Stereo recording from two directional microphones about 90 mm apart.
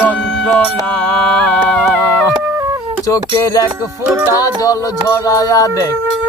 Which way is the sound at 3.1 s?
40° left (ahead or behind).